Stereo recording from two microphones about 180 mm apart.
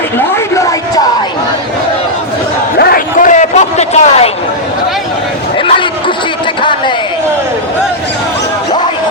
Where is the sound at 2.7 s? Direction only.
55° left (ahead or behind); by 4.3 s 35° left (ahead or behind).